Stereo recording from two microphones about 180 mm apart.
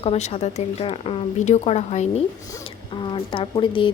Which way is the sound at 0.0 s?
35° left (ahead or behind).